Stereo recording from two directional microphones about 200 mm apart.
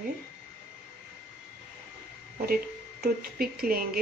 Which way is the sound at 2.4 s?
50° right (ahead or behind).